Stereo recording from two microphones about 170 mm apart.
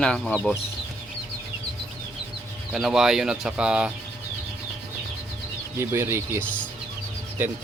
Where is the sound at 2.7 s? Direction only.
Centre (ahead or behind).